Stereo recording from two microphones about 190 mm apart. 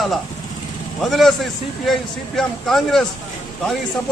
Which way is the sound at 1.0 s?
Centre (ahead or behind).